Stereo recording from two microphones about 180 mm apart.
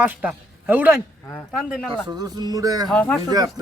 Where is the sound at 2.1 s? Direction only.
20° right (ahead or behind).